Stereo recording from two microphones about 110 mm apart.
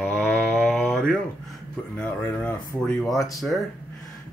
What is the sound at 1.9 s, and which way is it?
Mantra, 10° left (ahead or behind).